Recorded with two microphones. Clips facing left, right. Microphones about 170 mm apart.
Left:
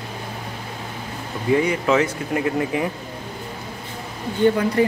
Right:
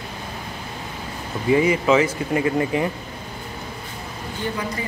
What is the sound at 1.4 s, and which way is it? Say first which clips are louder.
Speech: right 1 dB; 5° right (ahead or behind).